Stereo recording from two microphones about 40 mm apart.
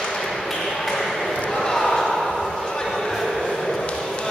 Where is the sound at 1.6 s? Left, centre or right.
Centre.